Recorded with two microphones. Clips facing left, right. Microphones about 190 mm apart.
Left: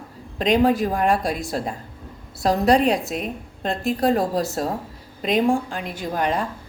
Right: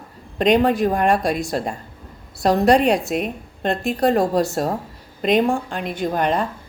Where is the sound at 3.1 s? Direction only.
60° right (ahead or behind).